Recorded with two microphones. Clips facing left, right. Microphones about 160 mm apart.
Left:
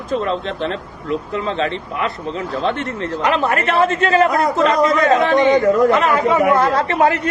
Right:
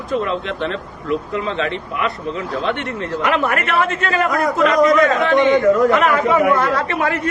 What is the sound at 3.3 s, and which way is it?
A man's voice, 30° left (ahead or behind).